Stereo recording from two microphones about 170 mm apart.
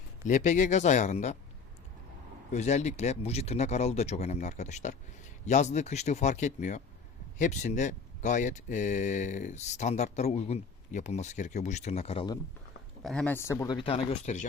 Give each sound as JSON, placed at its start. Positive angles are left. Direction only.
{"t": 0.3, "sound": "speech", "side_deg": 45}
{"t": 2.5, "sound": "speech", "side_deg": 40}
{"t": 13.0, "sound": "speech", "side_deg": 0}
{"t": 13.7, "sound": "speech", "side_deg": 35}